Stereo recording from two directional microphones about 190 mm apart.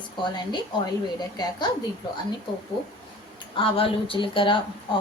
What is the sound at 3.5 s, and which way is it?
A woman's voice, 30° left (ahead or behind).